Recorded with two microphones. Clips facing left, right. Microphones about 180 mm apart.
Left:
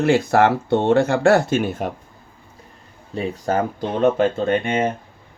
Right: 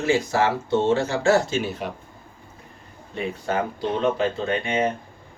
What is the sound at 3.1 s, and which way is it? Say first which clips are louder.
Speech: left 4 dB; 40° left (ahead or behind).